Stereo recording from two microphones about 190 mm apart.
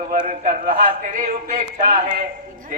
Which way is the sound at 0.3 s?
45° right (ahead or behind).